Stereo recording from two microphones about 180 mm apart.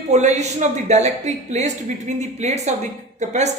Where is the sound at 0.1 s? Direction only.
40° right (ahead or behind).